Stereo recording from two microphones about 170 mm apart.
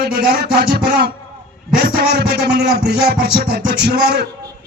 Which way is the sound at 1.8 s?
65° right (ahead or behind).